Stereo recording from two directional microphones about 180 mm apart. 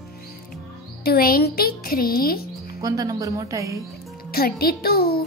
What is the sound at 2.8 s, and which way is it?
Speech, 20° right (ahead or behind).